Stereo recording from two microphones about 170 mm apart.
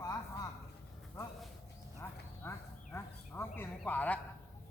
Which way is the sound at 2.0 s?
15° left (ahead or behind).